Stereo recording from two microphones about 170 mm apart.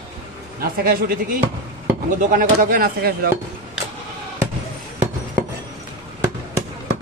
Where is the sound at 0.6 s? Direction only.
60° right (ahead or behind).